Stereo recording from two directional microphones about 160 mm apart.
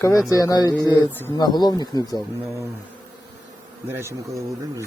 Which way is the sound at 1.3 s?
25° left (ahead or behind).